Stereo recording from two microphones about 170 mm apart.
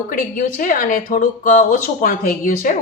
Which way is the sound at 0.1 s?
55° left (ahead or behind).